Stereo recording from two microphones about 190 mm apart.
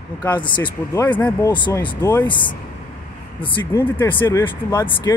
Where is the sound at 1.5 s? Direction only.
25° left (ahead or behind).